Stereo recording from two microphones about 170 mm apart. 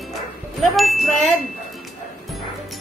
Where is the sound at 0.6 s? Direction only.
Centre (ahead or behind).